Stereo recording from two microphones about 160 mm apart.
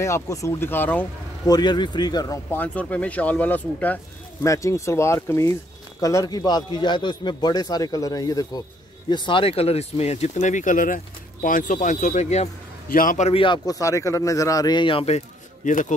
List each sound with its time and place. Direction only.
0.0 s speech: 20° left (ahead or behind)
1.4 s speech: 25° left (ahead or behind)
2.5 s speech: 10° left (ahead or behind); by 12.4 s 45° left (ahead or behind)
12.9 s a man's voice: 60° left (ahead or behind)
13.3 s speech: 30° left (ahead or behind); by 15.9 s 55° left (ahead or behind)